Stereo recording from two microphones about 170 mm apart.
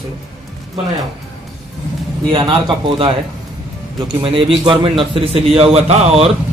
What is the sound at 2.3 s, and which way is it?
A man's voice, 30° right (ahead or behind).